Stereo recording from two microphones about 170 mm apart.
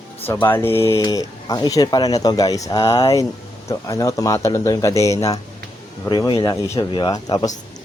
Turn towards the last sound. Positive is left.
turn(degrees=20)  # may be behind; listen again after turning